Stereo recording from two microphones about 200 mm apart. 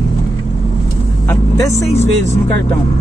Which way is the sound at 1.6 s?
15° left (ahead or behind).